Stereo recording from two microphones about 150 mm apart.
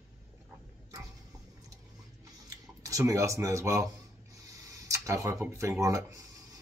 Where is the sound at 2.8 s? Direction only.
20° right (ahead or behind).